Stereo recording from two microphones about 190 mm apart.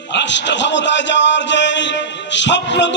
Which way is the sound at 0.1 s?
70° left (ahead or behind).